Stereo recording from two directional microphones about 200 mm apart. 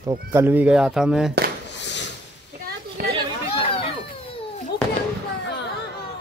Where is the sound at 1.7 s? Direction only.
60° left (ahead or behind).